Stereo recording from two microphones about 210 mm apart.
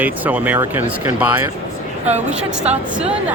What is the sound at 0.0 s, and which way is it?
Speech, 5° right (ahead or behind).